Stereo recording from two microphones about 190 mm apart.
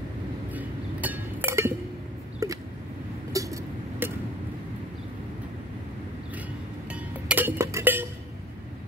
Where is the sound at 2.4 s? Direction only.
15° right (ahead or behind).